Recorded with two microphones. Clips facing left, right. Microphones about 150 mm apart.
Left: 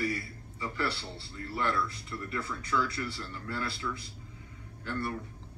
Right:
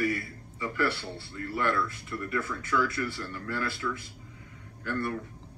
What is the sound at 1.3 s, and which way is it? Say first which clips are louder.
Speech: right 3 dB; 30° left (ahead or behind).